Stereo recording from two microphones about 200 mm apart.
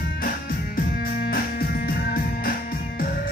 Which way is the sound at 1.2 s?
50° left (ahead or behind).